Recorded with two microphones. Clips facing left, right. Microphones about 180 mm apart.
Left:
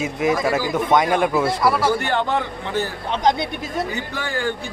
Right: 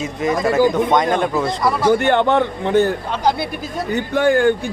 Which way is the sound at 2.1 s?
60° right (ahead or behind).